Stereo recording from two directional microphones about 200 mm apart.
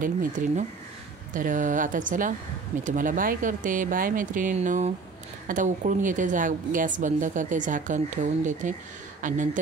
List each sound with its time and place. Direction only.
0.0 s a woman's voice: 40° right (ahead or behind)